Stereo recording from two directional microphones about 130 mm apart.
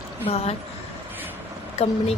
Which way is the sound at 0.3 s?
50° left (ahead or behind).